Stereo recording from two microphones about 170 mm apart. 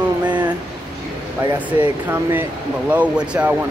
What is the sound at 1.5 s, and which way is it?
Speech, 10° right (ahead or behind).